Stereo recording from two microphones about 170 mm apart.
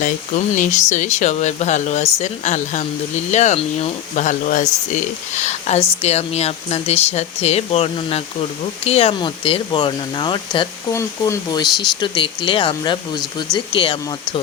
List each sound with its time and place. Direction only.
0.0 s speech: 50° left (ahead or behind); by 14.0 s 30° left (ahead or behind)